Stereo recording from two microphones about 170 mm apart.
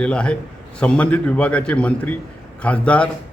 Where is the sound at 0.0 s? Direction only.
5° left (ahead or behind).